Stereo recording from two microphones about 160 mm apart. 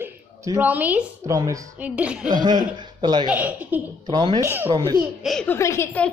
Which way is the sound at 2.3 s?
25° right (ahead or behind).